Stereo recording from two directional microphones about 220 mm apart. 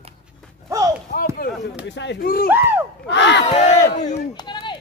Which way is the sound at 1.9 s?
55° left (ahead or behind).